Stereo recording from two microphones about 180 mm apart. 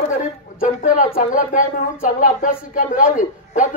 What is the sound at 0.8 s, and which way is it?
A woman's voice, 45° left (ahead or behind).